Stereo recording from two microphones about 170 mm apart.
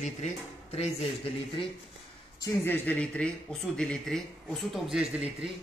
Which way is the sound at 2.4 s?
15° left (ahead or behind).